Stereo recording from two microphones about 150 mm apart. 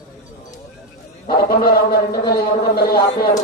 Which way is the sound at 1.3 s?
90° left.